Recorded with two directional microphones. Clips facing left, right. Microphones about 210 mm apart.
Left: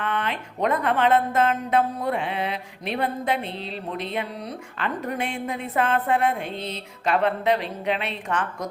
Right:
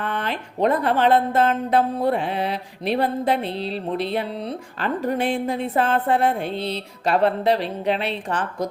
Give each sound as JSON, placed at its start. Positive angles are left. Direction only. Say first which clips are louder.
{"t": 0.0, "sound": "speech", "louder": "right 1 dB", "side_deg": -35}